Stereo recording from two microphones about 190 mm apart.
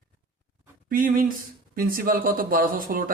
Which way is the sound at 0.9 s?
45° right (ahead or behind).